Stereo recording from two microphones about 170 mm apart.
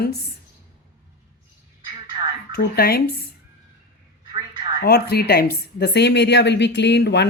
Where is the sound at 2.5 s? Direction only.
65° left (ahead or behind).